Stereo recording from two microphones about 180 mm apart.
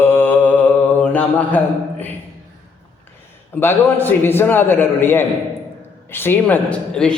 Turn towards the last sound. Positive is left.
turn(degrees=5)  # may be behind; listen again after turning